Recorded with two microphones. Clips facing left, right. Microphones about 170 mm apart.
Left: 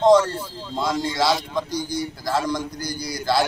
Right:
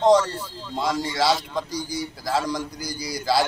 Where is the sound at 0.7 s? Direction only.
5° right (ahead or behind).